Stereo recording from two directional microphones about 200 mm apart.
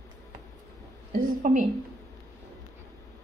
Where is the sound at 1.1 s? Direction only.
40° right (ahead or behind).